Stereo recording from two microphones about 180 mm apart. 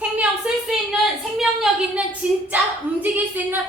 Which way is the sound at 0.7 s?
Centre (ahead or behind).